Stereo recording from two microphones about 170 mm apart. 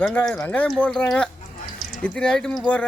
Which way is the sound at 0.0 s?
5° left (ahead or behind).